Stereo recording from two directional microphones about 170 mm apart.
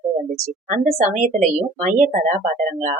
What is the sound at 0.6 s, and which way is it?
Speech, 45° right (ahead or behind).